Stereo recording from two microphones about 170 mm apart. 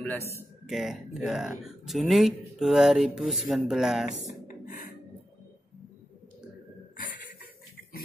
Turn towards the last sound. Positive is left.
turn(degrees=50)  # may be behind; listen again after turning